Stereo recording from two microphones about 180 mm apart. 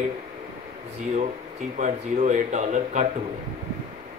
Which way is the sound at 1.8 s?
40° right (ahead or behind).